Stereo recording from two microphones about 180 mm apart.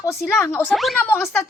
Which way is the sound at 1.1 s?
15° left (ahead or behind).